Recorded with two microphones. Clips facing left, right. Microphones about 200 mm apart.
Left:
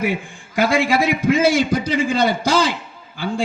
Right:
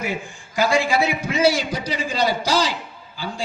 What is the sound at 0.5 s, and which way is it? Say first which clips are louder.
A man's voice: left 2 dB; 55° left (ahead or behind).